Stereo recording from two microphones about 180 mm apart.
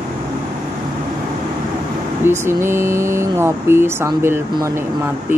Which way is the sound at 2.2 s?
15° right (ahead or behind).